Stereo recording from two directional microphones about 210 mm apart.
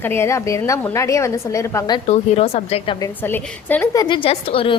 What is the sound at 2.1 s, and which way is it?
A woman's voice, 30° left (ahead or behind).